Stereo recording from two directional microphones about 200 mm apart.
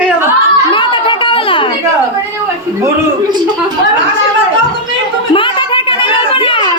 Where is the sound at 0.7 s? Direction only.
25° left (ahead or behind).